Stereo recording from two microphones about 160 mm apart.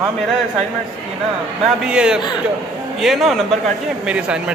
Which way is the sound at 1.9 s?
5° right (ahead or behind).